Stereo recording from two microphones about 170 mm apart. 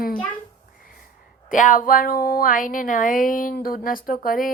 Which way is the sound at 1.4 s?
50° left (ahead or behind).